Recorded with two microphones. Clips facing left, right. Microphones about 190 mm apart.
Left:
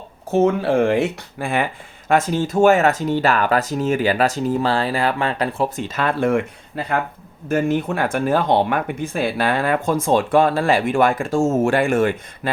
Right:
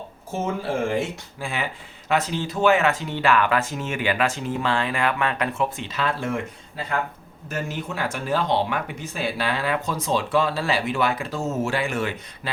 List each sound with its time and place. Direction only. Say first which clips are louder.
0.3 s speech: left 10 dB; 65° left (ahead or behind)
7.4 s speech: left 11 dB; 55° left (ahead or behind)